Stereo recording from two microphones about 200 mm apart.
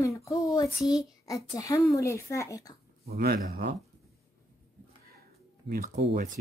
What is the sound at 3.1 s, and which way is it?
Speech, 50° right (ahead or behind).